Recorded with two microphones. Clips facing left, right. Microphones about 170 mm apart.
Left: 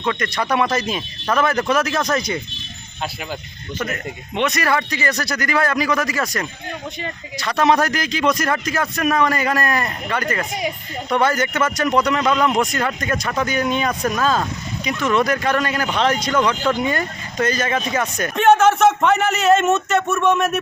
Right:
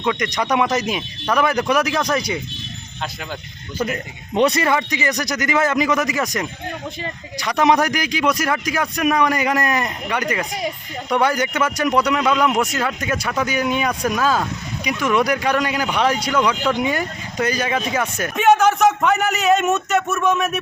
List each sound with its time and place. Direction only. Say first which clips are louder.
0.0 s speech: right 1 dB; 15° right (ahead or behind)
4.4 s a man's voice: right 3 dB; 30° right (ahead or behind); by 20.6 s centre (ahead or behind)